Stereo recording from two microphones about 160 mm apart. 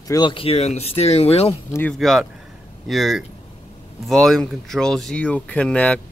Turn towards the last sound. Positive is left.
turn(degrees=10)  # may be behind; listen again after turning